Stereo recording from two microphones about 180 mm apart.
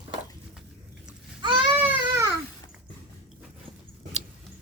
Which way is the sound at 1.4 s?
25° right (ahead or behind).